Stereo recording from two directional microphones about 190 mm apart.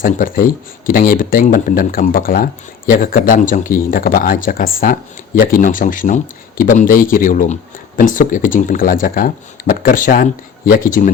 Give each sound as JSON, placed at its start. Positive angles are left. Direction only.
{"t": 0.0, "sound": "speech", "side_deg": 50}